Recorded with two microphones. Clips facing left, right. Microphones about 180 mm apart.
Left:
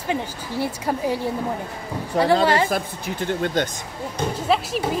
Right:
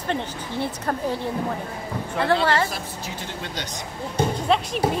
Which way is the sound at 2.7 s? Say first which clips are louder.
Left 7 dB; 55° left (ahead or behind).